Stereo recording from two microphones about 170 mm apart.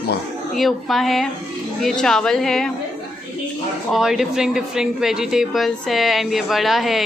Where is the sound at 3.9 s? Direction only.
Centre (ahead or behind).